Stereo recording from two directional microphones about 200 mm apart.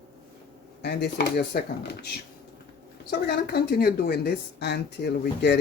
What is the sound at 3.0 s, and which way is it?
A woman's voice, 50° left (ahead or behind).